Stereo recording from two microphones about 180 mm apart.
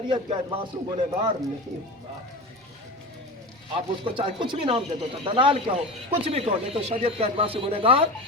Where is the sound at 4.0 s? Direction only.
25° right (ahead or behind).